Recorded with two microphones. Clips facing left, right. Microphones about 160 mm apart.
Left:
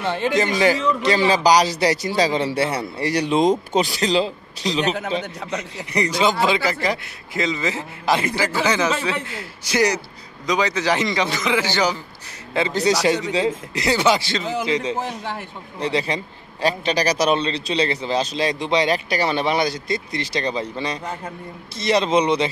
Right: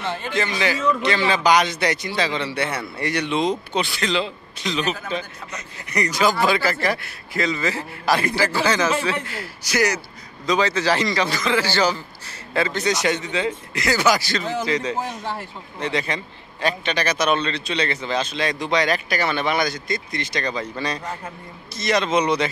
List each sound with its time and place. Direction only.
0.3 s speech: 40° left (ahead or behind)
5.9 s speech: 30° left (ahead or behind)
9.9 s a man's voice: 15° left (ahead or behind)
12.7 s speech: 35° left (ahead or behind)